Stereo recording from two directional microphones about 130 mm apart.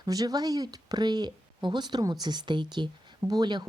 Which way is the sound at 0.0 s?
30° right (ahead or behind).